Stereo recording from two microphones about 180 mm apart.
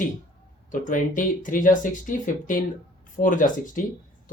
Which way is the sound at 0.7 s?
50° left (ahead or behind).